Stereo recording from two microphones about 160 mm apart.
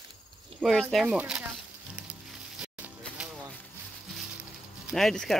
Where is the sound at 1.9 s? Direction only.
5° right (ahead or behind).